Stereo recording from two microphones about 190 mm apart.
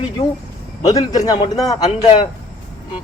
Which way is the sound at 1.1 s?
20° left (ahead or behind).